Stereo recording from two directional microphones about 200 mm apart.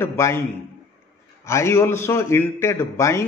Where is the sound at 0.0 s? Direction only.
10° left (ahead or behind).